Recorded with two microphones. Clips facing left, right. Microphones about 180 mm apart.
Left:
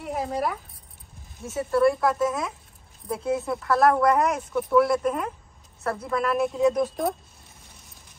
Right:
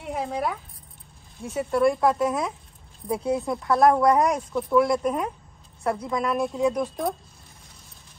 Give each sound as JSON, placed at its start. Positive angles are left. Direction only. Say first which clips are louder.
{"t": 0.0, "sound": "speech", "louder": "left 1 dB", "side_deg": 0}
{"t": 1.7, "sound": "speech", "louder": "even", "side_deg": -20}
{"t": 4.6, "sound": "speech", "louder": "left 1 dB", "side_deg": 0}
{"t": 6.2, "sound": "speech", "louder": "left 2 dB", "side_deg": 0}